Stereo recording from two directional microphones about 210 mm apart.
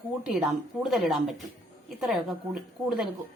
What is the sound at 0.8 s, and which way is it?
A woman's voice, centre (ahead or behind).